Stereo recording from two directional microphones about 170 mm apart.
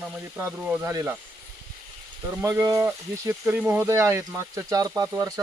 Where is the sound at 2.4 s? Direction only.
20° right (ahead or behind).